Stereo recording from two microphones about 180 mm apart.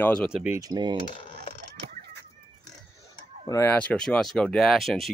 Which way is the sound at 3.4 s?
15° left (ahead or behind).